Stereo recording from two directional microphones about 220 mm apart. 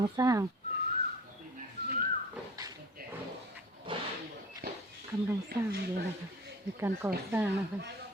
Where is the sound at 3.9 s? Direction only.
25° right (ahead or behind).